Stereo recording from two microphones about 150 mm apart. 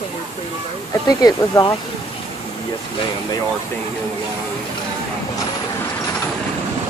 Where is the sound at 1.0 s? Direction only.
25° left (ahead or behind).